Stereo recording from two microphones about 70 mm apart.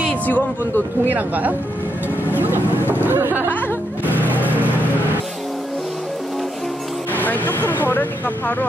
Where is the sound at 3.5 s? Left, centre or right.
Left.